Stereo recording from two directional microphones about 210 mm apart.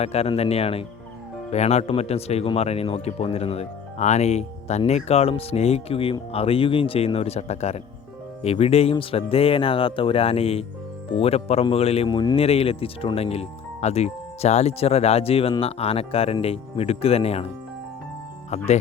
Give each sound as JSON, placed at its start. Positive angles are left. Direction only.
{"t": 0.0, "sound": "speech", "side_deg": 30}
{"t": 18.5, "sound": "speech", "side_deg": 30}